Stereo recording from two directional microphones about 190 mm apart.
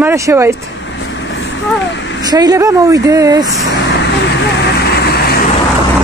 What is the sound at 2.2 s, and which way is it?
Speech, 20° right (ahead or behind).